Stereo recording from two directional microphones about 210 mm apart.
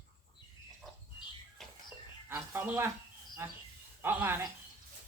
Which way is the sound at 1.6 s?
Centre (ahead or behind).